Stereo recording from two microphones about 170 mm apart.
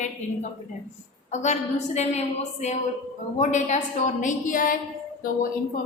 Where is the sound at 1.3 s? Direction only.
45° left (ahead or behind).